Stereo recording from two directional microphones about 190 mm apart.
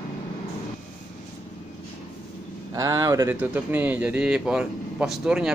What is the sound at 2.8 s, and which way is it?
Speech, 20° right (ahead or behind).